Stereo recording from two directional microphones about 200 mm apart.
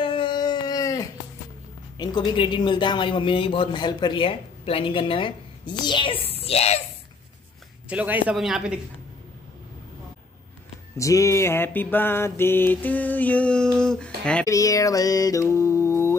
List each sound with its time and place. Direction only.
0.0 s a sound: 25° left (ahead or behind)
2.0 s speech: 20° left (ahead or behind)
5.9 s a sound: 25° left (ahead or behind)
7.9 s a man's voice: 10° right (ahead or behind)
11.0 s mantra: 15° left (ahead or behind)
14.5 s speech: 15° left (ahead or behind)